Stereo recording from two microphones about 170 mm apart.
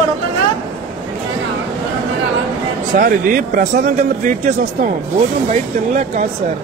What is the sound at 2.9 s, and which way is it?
Speech, 55° right (ahead or behind).